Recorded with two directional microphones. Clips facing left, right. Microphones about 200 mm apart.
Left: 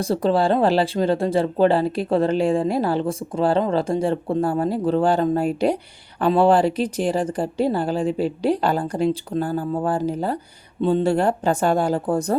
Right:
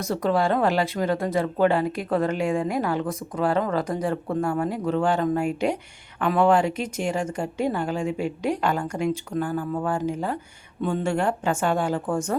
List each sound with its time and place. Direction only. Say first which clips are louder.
0.0 s speech: left 4 dB; 30° left (ahead or behind)